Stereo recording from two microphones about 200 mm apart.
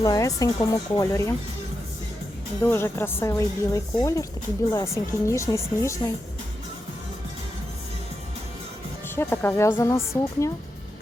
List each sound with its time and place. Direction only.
0.0 s speech: 15° left (ahead or behind)
2.6 s speech: 10° left (ahead or behind)
9.1 s speech: 10° left (ahead or behind)